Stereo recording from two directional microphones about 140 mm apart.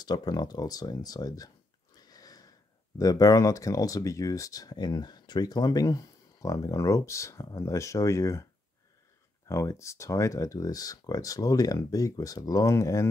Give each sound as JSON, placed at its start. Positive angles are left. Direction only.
{"t": 0.0, "sound": "speech", "side_deg": 30}
{"t": 2.0, "sound": "sniff", "side_deg": 25}
{"t": 3.0, "sound": "speech", "side_deg": 25}
{"t": 9.5, "sound": "speech", "side_deg": 20}